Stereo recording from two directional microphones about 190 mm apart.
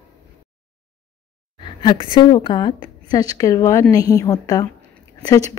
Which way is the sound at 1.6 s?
25° left (ahead or behind).